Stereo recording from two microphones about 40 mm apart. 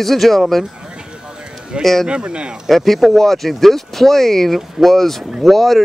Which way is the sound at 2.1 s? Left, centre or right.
Right.